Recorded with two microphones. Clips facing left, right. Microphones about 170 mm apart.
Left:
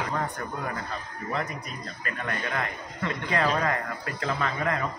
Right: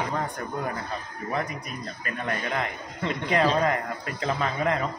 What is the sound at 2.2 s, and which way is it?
A man's voice, 20° right (ahead or behind).